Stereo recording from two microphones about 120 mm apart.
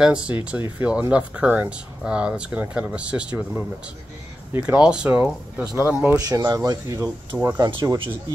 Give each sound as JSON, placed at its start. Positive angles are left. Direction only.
{"t": 0.0, "sound": "speech", "side_deg": -10}
{"t": 4.5, "sound": "speech", "side_deg": -10}
{"t": 6.1, "sound": "speech", "side_deg": -30}